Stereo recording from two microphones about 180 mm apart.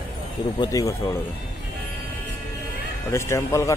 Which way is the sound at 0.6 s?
20° left (ahead or behind).